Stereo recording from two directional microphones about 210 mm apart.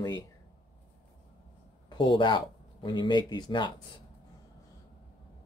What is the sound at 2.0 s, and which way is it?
Speech, 20° left (ahead or behind).